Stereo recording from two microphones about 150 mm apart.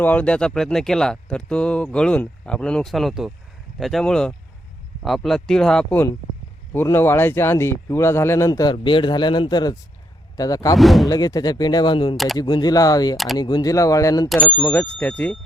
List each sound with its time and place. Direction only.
0.0 s speech: 10° left (ahead or behind)
8.7 s speech: 35° left (ahead or behind)
10.8 s speech: centre (ahead or behind)
11.1 s speech: 25° left (ahead or behind)
12.1 s speech: centre (ahead or behind)
12.4 s speech: 30° left (ahead or behind)
14.3 s speech: 5° left (ahead or behind)